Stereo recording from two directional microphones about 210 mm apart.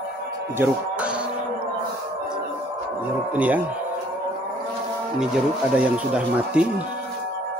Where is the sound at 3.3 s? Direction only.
5° right (ahead or behind).